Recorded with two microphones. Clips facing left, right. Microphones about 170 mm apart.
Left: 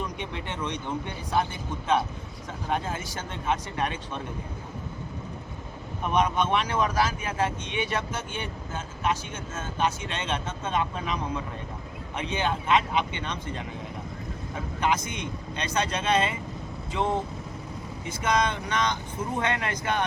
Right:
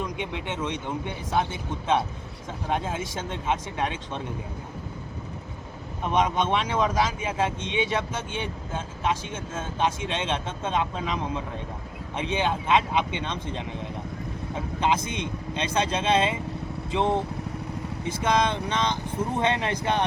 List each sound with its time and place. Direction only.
0.0 s speech: 20° right (ahead or behind)
2.6 s speech: 20° right (ahead or behind)
6.1 s speech: 20° right (ahead or behind)
14.8 s speech: 25° right (ahead or behind)
18.3 s speech: 25° right (ahead or behind)